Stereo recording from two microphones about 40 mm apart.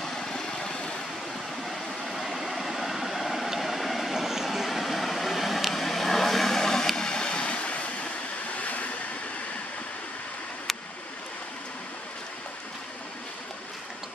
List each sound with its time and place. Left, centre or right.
0.0 s vehicle: centre
1.7 s vehicle: centre; by 8.1 s left
8.5 s a sound: left